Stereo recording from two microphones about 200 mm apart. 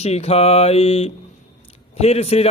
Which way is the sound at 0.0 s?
30° left (ahead or behind).